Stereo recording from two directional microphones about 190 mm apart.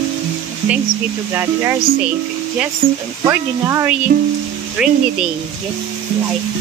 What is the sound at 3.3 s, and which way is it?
Speech, 15° right (ahead or behind).